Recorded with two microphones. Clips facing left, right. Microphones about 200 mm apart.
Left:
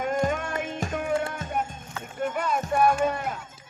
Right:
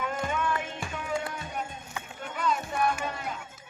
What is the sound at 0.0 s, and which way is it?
Music, 45° left (ahead or behind).